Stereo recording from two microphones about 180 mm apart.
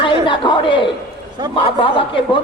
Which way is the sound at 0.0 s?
25° left (ahead or behind).